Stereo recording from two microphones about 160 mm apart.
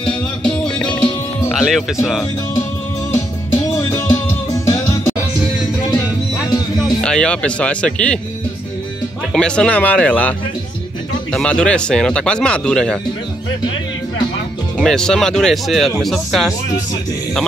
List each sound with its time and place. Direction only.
0.0 s music: 5° left (ahead or behind)
1.5 s speech: centre (ahead or behind)
3.7 s music: 15° left (ahead or behind)
7.0 s speech: 5° left (ahead or behind)
9.3 s speech: 5° left (ahead or behind)
11.3 s speech: 5° left (ahead or behind)
14.8 s speech: 5° left (ahead or behind)